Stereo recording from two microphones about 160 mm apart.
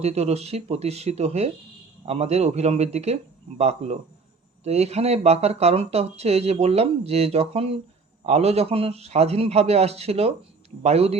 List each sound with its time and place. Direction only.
0.0 s speech: 40° right (ahead or behind)